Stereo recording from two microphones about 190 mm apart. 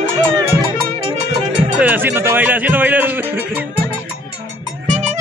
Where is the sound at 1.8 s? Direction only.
10° right (ahead or behind).